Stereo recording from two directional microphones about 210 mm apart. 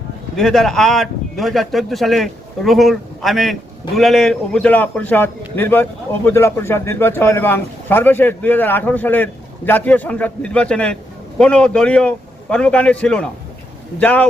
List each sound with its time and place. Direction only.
0.3 s speech: centre (ahead or behind)